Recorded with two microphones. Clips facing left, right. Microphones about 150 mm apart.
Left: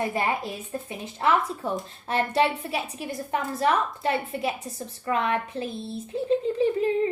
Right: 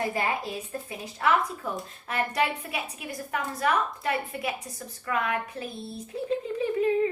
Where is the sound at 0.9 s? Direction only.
25° left (ahead or behind).